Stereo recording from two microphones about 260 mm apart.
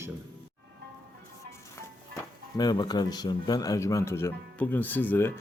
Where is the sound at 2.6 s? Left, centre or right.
Centre.